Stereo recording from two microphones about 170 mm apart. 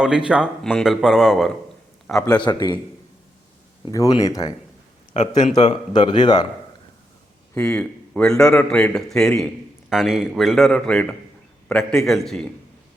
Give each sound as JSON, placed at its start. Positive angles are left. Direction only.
{"t": 0.3, "sound": "a man's voice", "side_deg": -5}
{"t": 2.4, "sound": "a man's voice", "side_deg": 25}
{"t": 3.9, "sound": "a man's voice", "side_deg": 20}
{"t": 5.1, "sound": "speech", "side_deg": 40}
{"t": 5.6, "sound": "a man's voice", "side_deg": 30}
{"t": 7.5, "sound": "a man's voice", "side_deg": 5}